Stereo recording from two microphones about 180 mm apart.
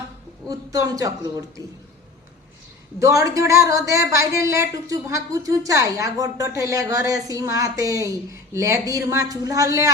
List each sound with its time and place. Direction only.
0.4 s a woman's voice: 20° right (ahead or behind)
3.0 s a woman's voice: 20° right (ahead or behind)